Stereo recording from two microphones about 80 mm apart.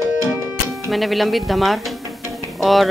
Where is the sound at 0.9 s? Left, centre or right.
Centre.